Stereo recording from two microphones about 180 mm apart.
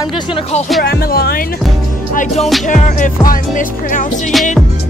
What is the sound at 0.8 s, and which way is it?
Speech, 60° left (ahead or behind).